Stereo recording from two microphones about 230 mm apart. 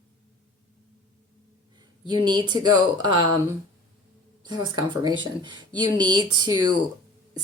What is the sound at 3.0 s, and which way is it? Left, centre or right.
Speech, centre.